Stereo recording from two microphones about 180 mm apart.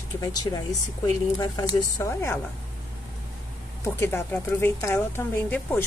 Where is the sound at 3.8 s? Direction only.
15° left (ahead or behind).